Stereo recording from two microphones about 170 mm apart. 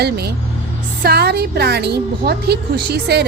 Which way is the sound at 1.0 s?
70° right (ahead or behind).